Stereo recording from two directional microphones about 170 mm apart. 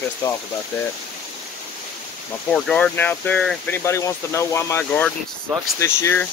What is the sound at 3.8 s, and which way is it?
Speech, 15° left (ahead or behind).